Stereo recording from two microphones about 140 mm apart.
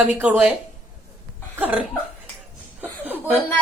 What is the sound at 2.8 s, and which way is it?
Chuckle, 10° right (ahead or behind).